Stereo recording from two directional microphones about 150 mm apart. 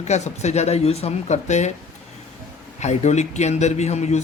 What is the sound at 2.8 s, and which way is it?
Speech, 50° left (ahead or behind).